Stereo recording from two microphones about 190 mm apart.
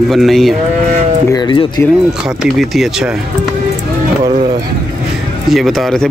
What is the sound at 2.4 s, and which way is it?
Speech, centre (ahead or behind).